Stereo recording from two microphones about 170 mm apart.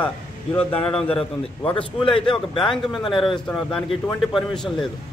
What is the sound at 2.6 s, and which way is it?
Speech, centre (ahead or behind).